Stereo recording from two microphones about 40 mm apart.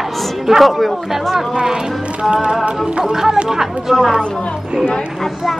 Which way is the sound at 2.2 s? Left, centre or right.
Centre.